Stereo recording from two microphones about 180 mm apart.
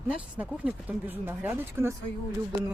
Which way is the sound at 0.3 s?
10° right (ahead or behind).